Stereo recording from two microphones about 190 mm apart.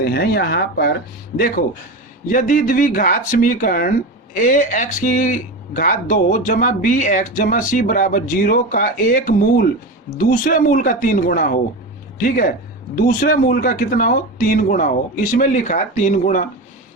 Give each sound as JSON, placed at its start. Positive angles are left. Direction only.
{"t": 0.0, "sound": "speech", "side_deg": 55}